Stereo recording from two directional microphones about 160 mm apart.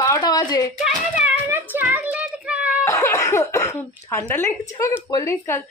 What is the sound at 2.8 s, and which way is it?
Speech, 15° left (ahead or behind).